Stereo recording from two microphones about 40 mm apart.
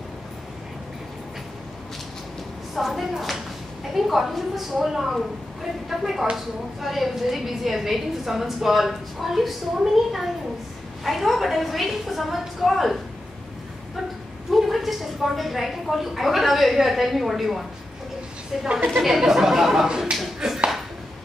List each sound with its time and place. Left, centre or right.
2.7 s a sound: centre
3.9 s a woman's voice: centre
14.5 s a woman's voice: centre
19.0 s a woman's voice: centre
20.4 s ping: centre